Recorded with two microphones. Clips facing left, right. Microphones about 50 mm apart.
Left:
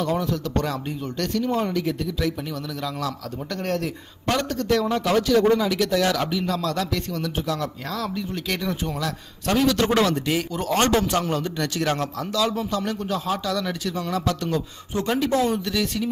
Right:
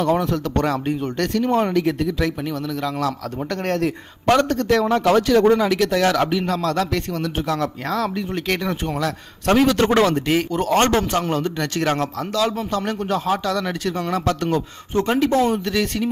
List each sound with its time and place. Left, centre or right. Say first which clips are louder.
0.0 s a man's voice: right 5 dB; right
3.6 s a man's voice: right 4 dB; right